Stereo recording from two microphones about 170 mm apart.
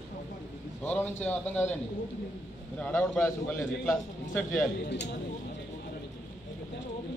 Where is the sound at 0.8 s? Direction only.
10° left (ahead or behind).